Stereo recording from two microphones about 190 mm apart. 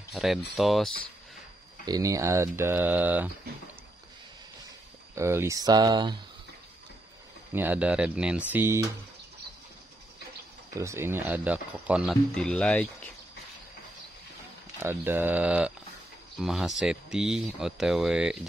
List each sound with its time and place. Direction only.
0.1 s speech: centre (ahead or behind)
1.9 s speech: 20° right (ahead or behind)
5.1 s speech: 15° right (ahead or behind)
7.5 s speech: 10° right (ahead or behind)
10.7 s speech: 15° right (ahead or behind)
12.4 s speech: 5° left (ahead or behind)
14.8 s speech: 10° right (ahead or behind)